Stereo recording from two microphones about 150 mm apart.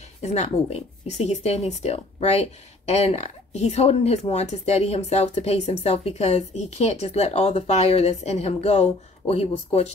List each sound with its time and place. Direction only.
0.2 s speech: 45° left (ahead or behind)